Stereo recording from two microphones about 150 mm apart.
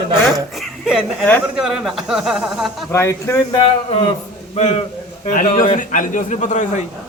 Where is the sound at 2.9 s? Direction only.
20° left (ahead or behind).